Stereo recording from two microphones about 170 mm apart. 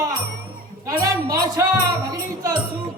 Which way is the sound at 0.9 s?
20° right (ahead or behind).